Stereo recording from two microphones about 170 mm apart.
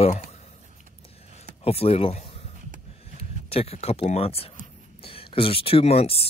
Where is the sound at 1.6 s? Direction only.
35° left (ahead or behind).